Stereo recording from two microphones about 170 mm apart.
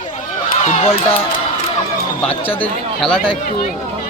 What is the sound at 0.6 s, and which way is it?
Speech, 35° left (ahead or behind).